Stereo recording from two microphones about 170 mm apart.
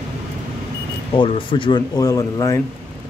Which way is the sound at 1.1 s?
30° left (ahead or behind).